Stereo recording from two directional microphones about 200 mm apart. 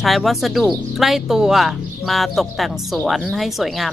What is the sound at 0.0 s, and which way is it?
Speech, centre (ahead or behind).